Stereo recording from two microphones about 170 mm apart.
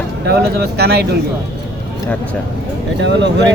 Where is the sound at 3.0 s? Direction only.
90° right.